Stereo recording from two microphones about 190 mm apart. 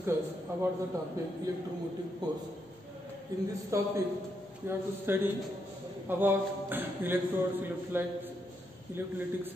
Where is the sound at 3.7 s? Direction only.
15° right (ahead or behind).